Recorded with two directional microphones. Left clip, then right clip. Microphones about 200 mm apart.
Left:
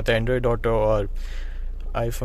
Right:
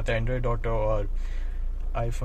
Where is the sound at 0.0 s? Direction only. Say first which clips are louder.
Left 7 dB; 40° left (ahead or behind).